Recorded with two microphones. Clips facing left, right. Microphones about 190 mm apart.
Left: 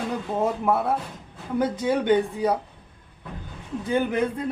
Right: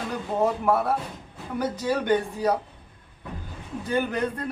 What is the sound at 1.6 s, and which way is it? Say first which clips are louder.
Speech: left 3 dB; 20° left (ahead or behind).